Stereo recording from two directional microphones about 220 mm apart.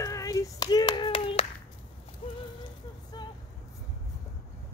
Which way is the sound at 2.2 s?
25° left (ahead or behind).